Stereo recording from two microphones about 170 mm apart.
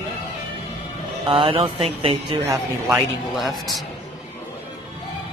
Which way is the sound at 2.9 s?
Centre (ahead or behind).